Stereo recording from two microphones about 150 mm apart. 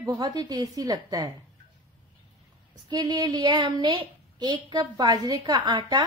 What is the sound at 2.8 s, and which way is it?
A woman's voice, 25° right (ahead or behind).